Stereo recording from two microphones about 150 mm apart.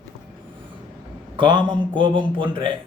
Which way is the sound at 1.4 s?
30° right (ahead or behind).